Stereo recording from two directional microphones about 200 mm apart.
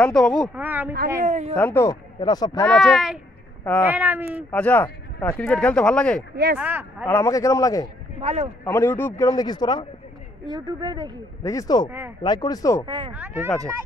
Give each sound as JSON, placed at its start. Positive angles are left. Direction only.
{"t": 0.0, "sound": "speech", "side_deg": 5}
{"t": 0.6, "sound": "speech", "side_deg": -10}
{"t": 1.2, "sound": "a man's voice", "side_deg": -35}
{"t": 1.5, "sound": "a man's voice", "side_deg": 10}
{"t": 2.6, "sound": "speech", "side_deg": 0}
{"t": 4.5, "sound": "speech", "side_deg": 10}
{"t": 6.6, "sound": "speech", "side_deg": -10}
{"t": 7.1, "sound": "a man's voice", "side_deg": 15}
{"t": 8.2, "sound": "a man's voice", "side_deg": -30}
{"t": 8.6, "sound": "a man's voice", "side_deg": 10}
{"t": 10.5, "sound": "speech", "side_deg": -20}
{"t": 11.4, "sound": "a man's voice", "side_deg": 15}
{"t": 12.8, "sound": "speech", "side_deg": -20}
{"t": 13.1, "sound": "speech", "side_deg": -10}